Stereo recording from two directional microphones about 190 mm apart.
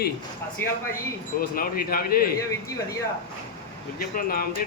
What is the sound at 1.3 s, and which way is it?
Speech, 50° left (ahead or behind).